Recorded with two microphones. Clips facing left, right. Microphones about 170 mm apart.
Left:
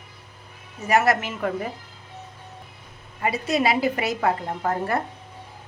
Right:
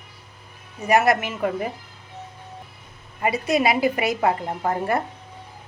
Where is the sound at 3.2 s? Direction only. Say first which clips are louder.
Right 2 dB; 15° right (ahead or behind).